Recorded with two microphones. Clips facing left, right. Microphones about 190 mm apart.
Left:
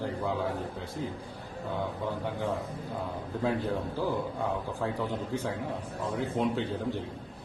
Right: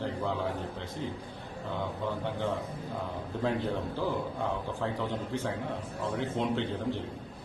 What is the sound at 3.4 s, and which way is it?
A man's voice, 15° left (ahead or behind).